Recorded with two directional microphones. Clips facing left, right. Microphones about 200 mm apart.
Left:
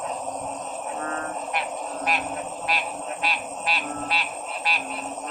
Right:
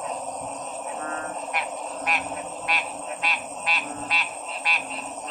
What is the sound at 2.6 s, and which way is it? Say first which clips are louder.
Frog: left 2 dB; 30° left (ahead or behind).